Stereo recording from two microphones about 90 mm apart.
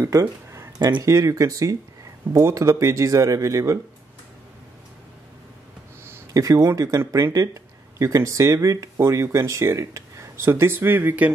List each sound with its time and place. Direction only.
0.0 s speech: 40° right (ahead or behind)
6.3 s speech: 40° right (ahead or behind); by 11.2 s 20° right (ahead or behind)